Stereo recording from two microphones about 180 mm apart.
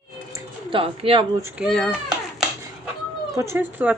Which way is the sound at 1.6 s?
Centre (ahead or behind).